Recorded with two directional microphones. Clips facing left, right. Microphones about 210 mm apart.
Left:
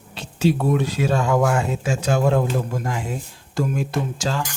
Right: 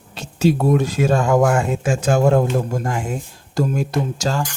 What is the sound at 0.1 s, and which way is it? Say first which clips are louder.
Speech: right 3 dB; 45° right (ahead or behind).